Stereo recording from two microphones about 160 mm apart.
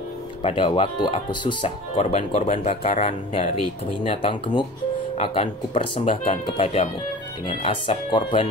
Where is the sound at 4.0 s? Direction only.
30° left (ahead or behind).